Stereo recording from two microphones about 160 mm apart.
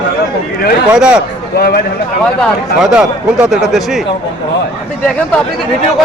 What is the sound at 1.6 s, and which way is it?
Speech, 75° left (ahead or behind).